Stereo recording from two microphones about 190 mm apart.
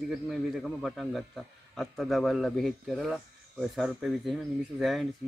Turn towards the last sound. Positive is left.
turn(degrees=0)  # may be behind; listen again after turning